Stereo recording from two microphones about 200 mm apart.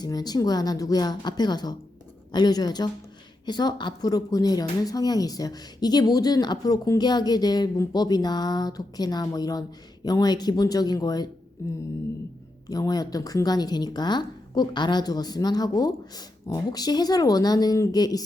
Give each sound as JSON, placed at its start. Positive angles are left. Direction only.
{"t": 0.0, "sound": "speech", "side_deg": 20}
{"t": 11.6, "sound": "a sound", "side_deg": 15}
{"t": 12.6, "sound": "speech", "side_deg": 20}